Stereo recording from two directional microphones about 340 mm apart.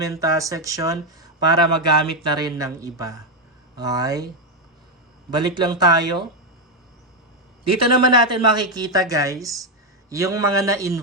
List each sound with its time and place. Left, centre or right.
0.0 s speech: centre
5.3 s speech: centre
7.6 s a man's voice: right
8.0 s speech: centre